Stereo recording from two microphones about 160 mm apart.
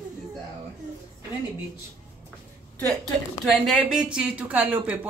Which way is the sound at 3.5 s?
Centre (ahead or behind).